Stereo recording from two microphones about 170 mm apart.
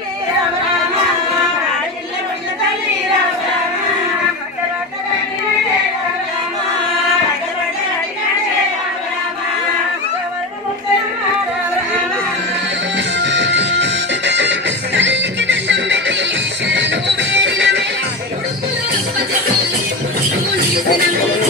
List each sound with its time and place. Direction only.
13.2 s music: 90° right